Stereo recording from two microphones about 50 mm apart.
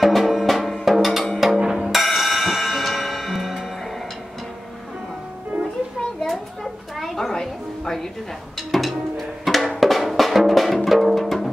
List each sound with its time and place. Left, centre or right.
0.0 s music: centre
0.8 s drum: centre
1.8 s music: centre
6.2 s music: centre
8.5 s drum: centre
10.9 s music: centre